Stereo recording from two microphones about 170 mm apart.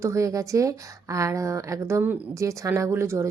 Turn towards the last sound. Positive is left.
turn(degrees=-15)  # may be behind; listen again after turning